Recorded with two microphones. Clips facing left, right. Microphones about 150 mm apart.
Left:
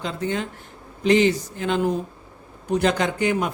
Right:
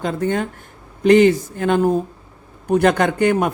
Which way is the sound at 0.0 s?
50° right (ahead or behind).